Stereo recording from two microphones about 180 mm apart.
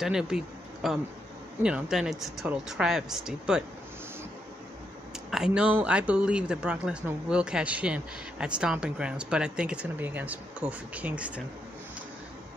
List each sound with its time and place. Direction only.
0.0 s a man's voice: 5° right (ahead or behind)
5.3 s a man's voice: 5° right (ahead or behind)